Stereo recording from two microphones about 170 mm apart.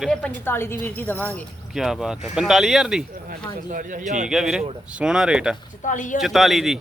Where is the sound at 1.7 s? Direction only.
Centre (ahead or behind).